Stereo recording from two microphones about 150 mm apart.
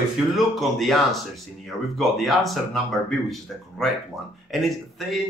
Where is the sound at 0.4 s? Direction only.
Centre (ahead or behind).